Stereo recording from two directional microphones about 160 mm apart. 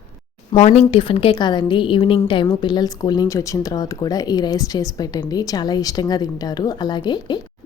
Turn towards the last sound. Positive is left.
turn(degrees=25)  # may be behind; listen again after turning